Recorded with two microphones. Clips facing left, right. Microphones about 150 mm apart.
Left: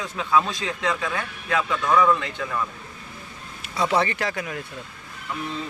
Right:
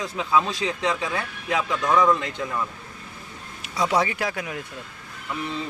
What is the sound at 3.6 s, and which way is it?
Speech, 10° right (ahead or behind).